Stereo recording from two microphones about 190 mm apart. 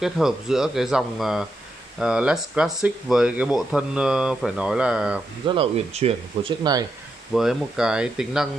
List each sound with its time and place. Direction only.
0.0 s speech: centre (ahead or behind)
5.5 s speech: 30° right (ahead or behind)
7.3 s speech: 5° right (ahead or behind)